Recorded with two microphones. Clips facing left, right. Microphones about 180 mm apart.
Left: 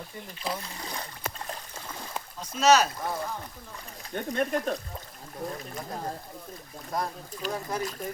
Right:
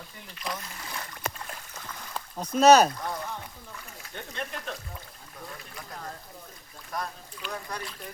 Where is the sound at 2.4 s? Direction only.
55° right (ahead or behind).